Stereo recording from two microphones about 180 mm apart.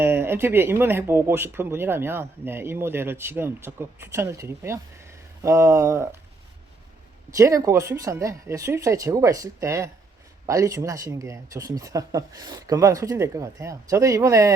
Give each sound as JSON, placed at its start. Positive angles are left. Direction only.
{"t": 0.0, "sound": "speech", "side_deg": -15}
{"t": 7.3, "sound": "speech", "side_deg": -15}